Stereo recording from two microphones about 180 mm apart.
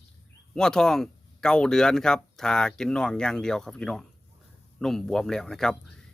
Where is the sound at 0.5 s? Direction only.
5° left (ahead or behind).